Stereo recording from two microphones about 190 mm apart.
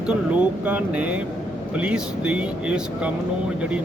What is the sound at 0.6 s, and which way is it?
A man's voice, 5° right (ahead or behind).